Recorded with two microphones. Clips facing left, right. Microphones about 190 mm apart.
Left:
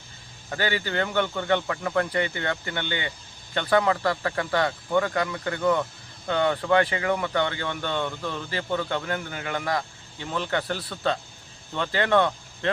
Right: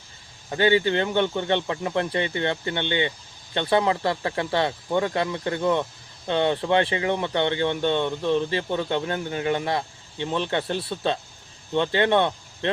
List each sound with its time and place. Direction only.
0.5 s speech: 20° right (ahead or behind)